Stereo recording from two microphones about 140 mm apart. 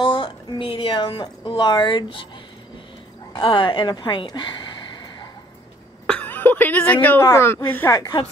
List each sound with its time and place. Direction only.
0.0 s a woman's voice: 35° left (ahead or behind)
3.3 s a woman's voice: 35° left (ahead or behind)
6.0 s cough: 10° left (ahead or behind)
7.2 s speech: 20° left (ahead or behind)